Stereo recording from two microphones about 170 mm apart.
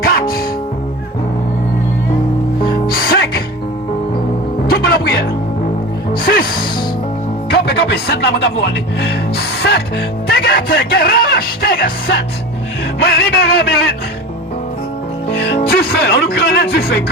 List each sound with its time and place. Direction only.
0.0 s music: 60° left (ahead or behind)
2.6 s music: 30° left (ahead or behind)
2.9 s music: 65° left (ahead or behind)
4.6 s music: 65° left (ahead or behind)
6.2 s music: 60° left (ahead or behind)
7.5 s music: 75° left (ahead or behind)
9.0 s speech: 75° left (ahead or behind)
10.2 s speech: 65° left (ahead or behind)
15.6 s speech: 65° left (ahead or behind)